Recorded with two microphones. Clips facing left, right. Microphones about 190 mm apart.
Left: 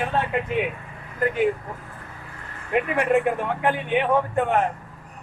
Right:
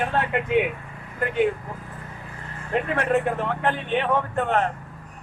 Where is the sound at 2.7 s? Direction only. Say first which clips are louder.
Left 2 dB; 10° left (ahead or behind).